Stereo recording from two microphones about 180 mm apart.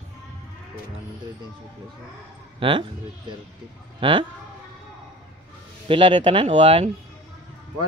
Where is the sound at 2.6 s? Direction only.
30° right (ahead or behind).